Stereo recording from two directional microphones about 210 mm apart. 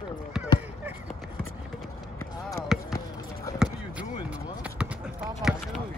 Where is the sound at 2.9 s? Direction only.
15° left (ahead or behind).